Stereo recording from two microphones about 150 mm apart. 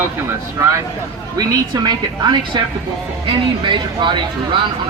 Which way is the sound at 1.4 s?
30° right (ahead or behind).